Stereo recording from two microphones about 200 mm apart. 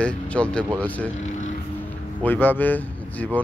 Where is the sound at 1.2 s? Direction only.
35° left (ahead or behind).